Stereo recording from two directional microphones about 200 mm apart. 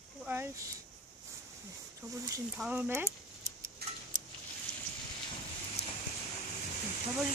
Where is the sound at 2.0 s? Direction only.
15° right (ahead or behind).